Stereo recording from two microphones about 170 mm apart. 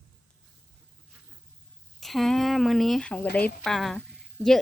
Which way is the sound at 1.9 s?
Centre (ahead or behind).